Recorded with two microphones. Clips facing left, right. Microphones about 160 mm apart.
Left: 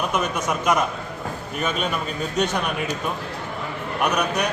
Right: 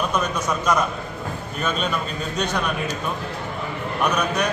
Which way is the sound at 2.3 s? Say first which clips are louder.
Left 3 dB; 20° left (ahead or behind).